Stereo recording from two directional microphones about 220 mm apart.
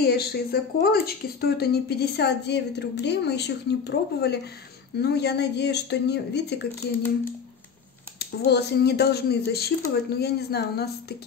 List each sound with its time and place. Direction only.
0.0 s speech: 45° left (ahead or behind)
8.5 s speech: 50° left (ahead or behind)